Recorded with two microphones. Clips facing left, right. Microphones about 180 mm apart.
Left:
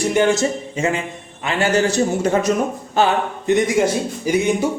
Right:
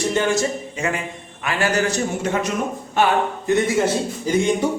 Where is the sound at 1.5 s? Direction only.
25° left (ahead or behind).